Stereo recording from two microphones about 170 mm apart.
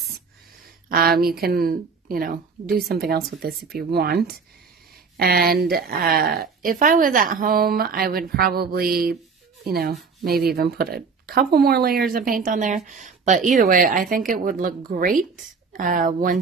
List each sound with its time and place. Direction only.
0.8 s speech: 60° right (ahead or behind)